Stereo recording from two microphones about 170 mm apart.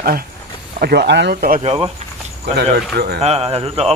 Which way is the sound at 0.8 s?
70° right (ahead or behind).